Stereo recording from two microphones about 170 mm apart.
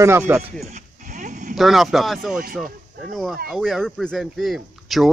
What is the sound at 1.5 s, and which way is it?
A man's voice, centre (ahead or behind).